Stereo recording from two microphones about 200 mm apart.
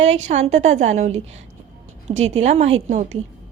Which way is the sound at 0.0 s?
35° right (ahead or behind).